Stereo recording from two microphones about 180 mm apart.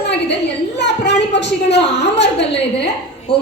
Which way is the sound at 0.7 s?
70° left (ahead or behind).